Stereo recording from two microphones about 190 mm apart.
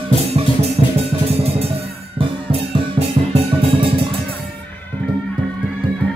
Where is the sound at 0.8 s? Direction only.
30° right (ahead or behind).